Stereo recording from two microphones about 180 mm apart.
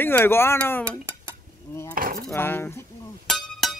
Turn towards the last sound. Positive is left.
turn(degrees=0)  # may be behind; listen again after turning